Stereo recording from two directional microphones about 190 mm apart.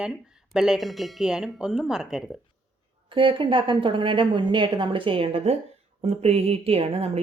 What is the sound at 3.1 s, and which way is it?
A woman's voice, 25° right (ahead or behind).